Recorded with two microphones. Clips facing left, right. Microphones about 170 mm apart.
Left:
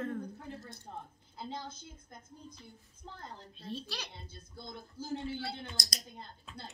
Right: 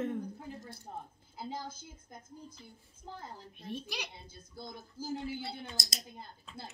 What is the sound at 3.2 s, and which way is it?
Speech, 10° right (ahead or behind).